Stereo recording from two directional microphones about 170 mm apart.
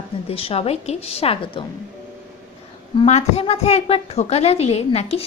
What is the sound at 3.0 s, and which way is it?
A woman's voice, 40° left (ahead or behind).